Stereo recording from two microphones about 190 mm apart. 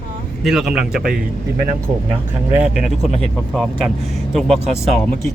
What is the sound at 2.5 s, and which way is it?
A man's voice, 5° right (ahead or behind).